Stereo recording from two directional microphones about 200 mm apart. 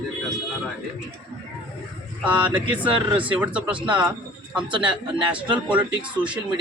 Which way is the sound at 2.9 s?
25° right (ahead or behind).